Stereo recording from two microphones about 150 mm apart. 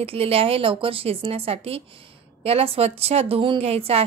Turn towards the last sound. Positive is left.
turn(degrees=-40)  # may be behind; listen again after turning